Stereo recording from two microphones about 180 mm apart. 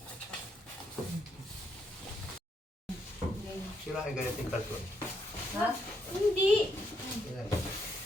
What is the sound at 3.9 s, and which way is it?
Speech, 5° right (ahead or behind).